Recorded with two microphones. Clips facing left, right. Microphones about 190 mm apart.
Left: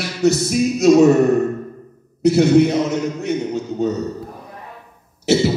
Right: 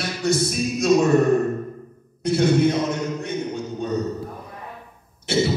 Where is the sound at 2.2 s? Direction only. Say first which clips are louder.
Left 7 dB; 70° left (ahead or behind).